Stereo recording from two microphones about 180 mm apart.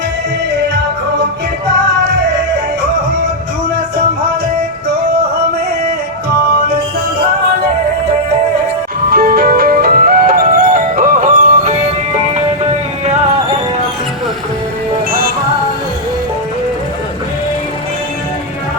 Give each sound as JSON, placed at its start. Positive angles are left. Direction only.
{"t": 9.0, "sound": "music", "side_deg": -55}